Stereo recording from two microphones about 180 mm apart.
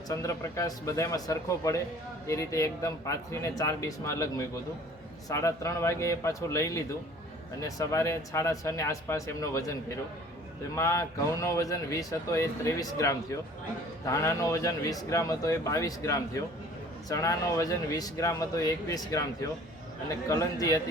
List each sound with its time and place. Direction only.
0.1 s speech: 15° left (ahead or behind)
10.8 s speech: 15° left (ahead or behind)